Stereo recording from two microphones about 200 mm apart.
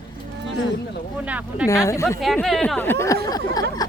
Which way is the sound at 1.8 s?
15° left (ahead or behind).